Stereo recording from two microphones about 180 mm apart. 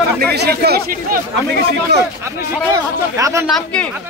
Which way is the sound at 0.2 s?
60° right (ahead or behind).